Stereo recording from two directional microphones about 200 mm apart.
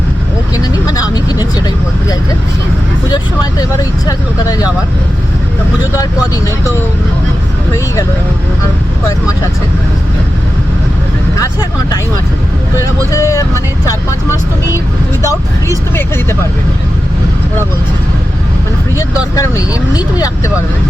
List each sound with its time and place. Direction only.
0.9 s vehicle: 20° left (ahead or behind)
3.6 s vehicle: 20° left (ahead or behind)
12.7 s speech: 15° left (ahead or behind)
18.9 s speech: 15° left (ahead or behind)